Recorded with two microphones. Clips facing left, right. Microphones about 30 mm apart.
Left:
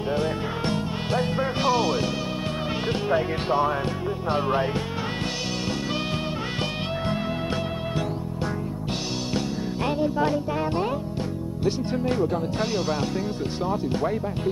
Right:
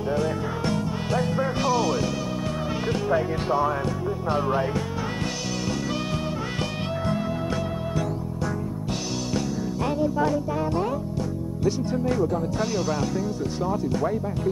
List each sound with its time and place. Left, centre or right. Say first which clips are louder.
0.1 s music: even; left
4.3 s speech: left 1 dB; left
9.8 s music: even; left
11.6 s speech: right 1 dB; left